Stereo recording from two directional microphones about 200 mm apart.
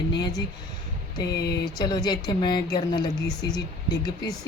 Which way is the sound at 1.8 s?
20° left (ahead or behind).